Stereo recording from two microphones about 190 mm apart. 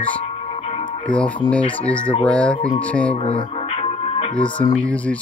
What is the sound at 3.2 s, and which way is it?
Music, 35° left (ahead or behind).